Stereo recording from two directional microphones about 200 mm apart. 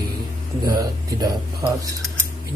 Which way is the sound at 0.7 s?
20° right (ahead or behind).